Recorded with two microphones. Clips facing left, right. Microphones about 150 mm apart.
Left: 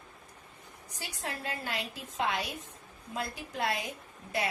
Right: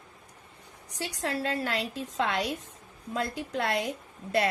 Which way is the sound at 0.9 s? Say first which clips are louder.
Right 8 dB; 90° right.